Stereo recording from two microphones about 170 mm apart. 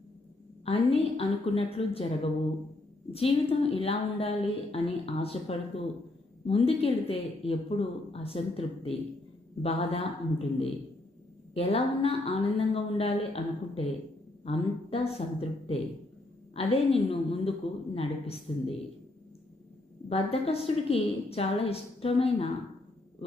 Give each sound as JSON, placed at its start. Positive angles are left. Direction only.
{"t": 0.6, "sound": "a woman's voice", "side_deg": 35}
{"t": 20.1, "sound": "a woman's voice", "side_deg": 35}